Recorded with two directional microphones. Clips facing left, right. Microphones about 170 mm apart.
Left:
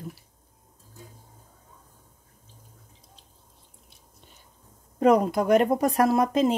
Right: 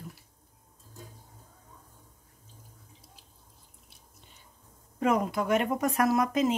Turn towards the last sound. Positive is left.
turn(degrees=30)  # may be behind; listen again after turning